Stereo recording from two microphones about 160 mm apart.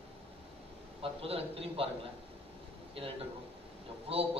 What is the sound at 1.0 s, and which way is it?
Speech, 35° right (ahead or behind).